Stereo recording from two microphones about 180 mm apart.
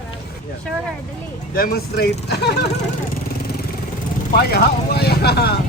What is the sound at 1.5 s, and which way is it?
Speech, 55° left (ahead or behind).